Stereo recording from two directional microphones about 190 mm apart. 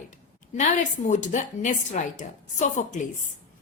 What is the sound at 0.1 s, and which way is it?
A woman's voice, 40° left (ahead or behind).